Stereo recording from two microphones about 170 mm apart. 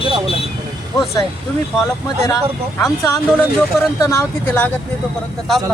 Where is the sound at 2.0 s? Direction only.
20° left (ahead or behind).